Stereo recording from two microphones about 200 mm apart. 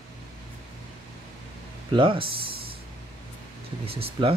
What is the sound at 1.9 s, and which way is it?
Speech, 25° right (ahead or behind).